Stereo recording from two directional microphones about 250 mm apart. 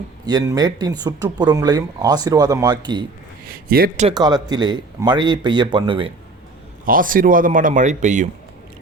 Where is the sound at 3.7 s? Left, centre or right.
Right.